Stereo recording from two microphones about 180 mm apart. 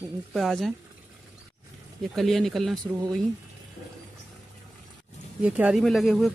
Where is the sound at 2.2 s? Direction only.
Centre (ahead or behind).